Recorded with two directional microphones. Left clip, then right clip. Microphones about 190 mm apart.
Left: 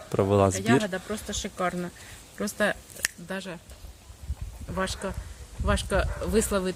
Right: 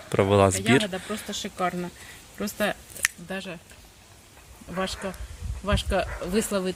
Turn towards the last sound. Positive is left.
turn(degrees=10)  # may be behind; listen again after turning